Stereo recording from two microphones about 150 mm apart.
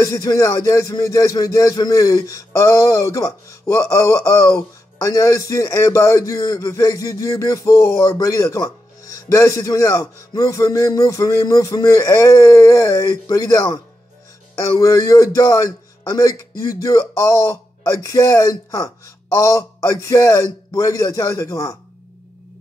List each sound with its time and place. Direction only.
0.0 s a man's voice: 25° left (ahead or behind)